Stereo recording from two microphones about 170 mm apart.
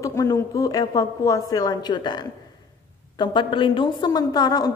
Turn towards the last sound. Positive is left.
turn(degrees=25)  # may be behind; listen again after turning